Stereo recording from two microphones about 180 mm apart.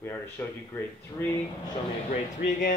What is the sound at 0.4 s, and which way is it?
Speech, 10° left (ahead or behind).